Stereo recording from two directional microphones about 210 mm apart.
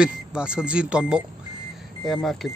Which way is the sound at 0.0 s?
5° right (ahead or behind).